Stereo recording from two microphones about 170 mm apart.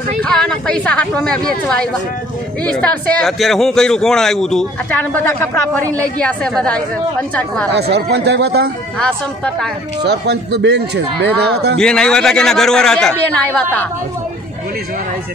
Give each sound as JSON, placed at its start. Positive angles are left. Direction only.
{"t": 0.2, "sound": "a woman's voice", "side_deg": 5}
{"t": 2.6, "sound": "a man's voice", "side_deg": 5}
{"t": 7.7, "sound": "a man's voice", "side_deg": -75}
{"t": 10.0, "sound": "a man's voice", "side_deg": -80}
{"t": 11.8, "sound": "a man's voice", "side_deg": 5}